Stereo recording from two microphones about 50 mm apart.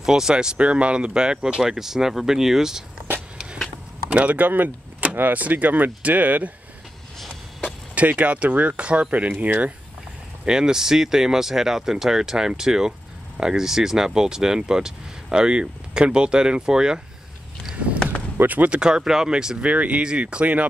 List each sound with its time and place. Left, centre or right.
0.0 s speech: centre
4.1 s speech: right
7.9 s speech: right
10.4 s speech: centre
18.0 s a sound: centre
18.5 s speech: right
18.8 s speech: centre
19.6 s speech: right